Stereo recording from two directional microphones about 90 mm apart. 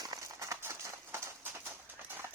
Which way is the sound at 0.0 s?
40° right (ahead or behind).